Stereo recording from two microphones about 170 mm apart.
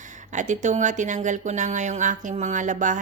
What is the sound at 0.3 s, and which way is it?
Speech, 45° right (ahead or behind).